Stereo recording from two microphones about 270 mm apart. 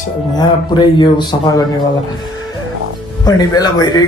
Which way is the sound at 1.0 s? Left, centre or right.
Centre.